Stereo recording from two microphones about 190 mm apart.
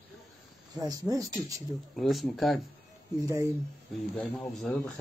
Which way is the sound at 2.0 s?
Centre (ahead or behind).